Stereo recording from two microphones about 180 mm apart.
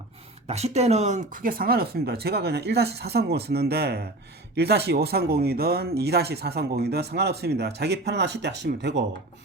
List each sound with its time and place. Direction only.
0.4 s speech: 35° right (ahead or behind); by 9.0 s 70° right (ahead or behind)